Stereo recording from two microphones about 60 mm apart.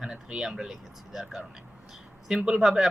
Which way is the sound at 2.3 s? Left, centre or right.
Centre.